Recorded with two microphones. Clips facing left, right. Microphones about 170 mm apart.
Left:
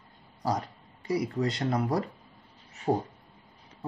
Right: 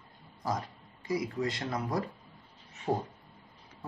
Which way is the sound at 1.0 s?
35° left (ahead or behind).